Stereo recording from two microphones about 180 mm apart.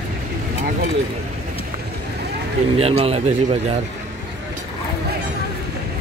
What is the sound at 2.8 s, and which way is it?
Speech, 35° right (ahead or behind).